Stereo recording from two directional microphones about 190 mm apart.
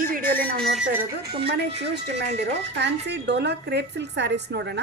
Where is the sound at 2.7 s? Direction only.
65° right (ahead or behind).